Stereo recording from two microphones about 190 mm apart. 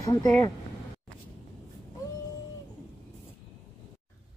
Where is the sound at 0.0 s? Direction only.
20° left (ahead or behind).